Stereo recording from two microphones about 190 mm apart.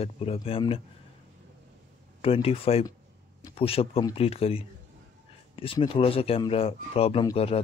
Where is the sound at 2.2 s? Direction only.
30° left (ahead or behind).